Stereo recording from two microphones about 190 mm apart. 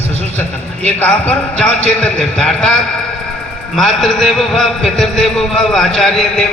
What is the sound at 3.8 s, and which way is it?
A man's voice, centre (ahead or behind).